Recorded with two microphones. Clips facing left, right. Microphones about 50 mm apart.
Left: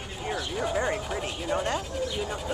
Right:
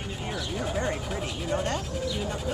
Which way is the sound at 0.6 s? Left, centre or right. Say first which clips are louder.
Left 2 dB; centre.